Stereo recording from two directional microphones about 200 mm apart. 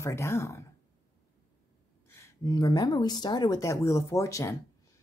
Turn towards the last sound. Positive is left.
turn(degrees=15)  # may be behind; listen again after turning